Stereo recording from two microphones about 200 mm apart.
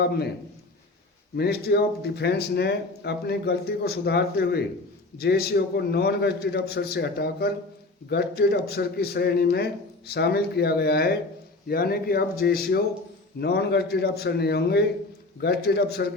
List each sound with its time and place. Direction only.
1.4 s a man's voice: 50° left (ahead or behind)